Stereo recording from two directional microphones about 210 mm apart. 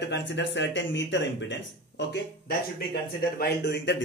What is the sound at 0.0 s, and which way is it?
A man's voice, 55° left (ahead or behind).